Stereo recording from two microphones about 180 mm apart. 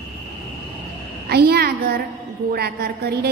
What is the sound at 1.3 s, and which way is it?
A woman's voice, 60° right (ahead or behind).